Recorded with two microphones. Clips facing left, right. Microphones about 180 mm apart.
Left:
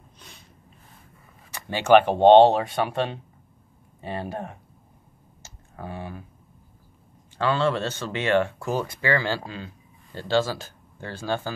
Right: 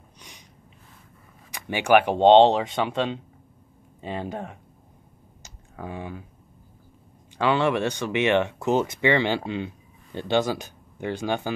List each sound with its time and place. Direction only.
0.2 s snort: 15° right (ahead or behind)
1.5 s speech: 15° right (ahead or behind)
5.4 s typing: 15° right (ahead or behind)
7.3 s speech: 15° right (ahead or behind)